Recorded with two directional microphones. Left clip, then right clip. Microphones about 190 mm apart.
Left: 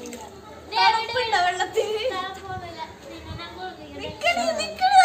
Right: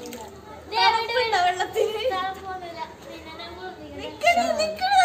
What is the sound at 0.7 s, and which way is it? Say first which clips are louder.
A woman's voice: left 1 dB; 5° right (ahead or behind).